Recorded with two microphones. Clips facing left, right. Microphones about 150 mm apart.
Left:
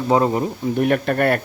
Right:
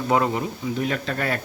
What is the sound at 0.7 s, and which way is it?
Speech, 60° left (ahead or behind).